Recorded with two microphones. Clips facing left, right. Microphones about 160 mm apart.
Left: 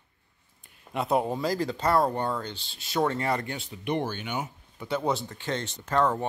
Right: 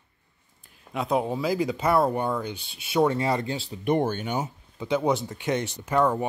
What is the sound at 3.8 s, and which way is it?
Speech, 45° right (ahead or behind).